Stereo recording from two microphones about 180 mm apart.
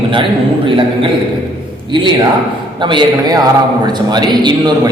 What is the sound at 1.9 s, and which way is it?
A man's voice, 25° right (ahead or behind).